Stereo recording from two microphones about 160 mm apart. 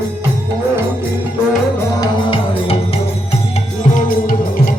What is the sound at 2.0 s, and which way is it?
Music, 35° left (ahead or behind).